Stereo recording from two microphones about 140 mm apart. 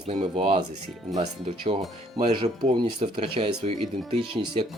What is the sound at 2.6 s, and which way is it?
Speech, 45° right (ahead or behind).